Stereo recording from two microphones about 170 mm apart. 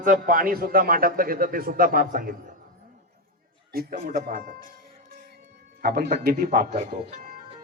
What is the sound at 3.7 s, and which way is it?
Speech, 60° right (ahead or behind).